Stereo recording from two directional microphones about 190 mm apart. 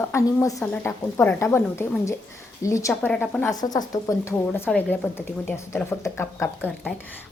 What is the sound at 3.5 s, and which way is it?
Speech, 20° left (ahead or behind).